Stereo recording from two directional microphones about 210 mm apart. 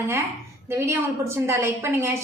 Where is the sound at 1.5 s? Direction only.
15° right (ahead or behind).